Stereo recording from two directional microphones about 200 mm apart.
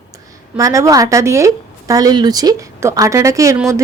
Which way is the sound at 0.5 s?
15° right (ahead or behind).